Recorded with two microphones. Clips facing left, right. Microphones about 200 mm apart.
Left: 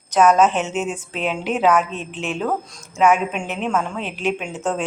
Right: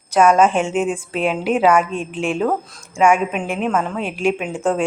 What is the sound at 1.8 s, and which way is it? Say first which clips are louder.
Speech: right 3 dB; 50° right (ahead or behind).